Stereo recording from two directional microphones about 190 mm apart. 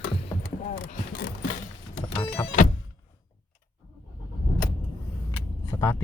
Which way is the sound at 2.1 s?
25° left (ahead or behind).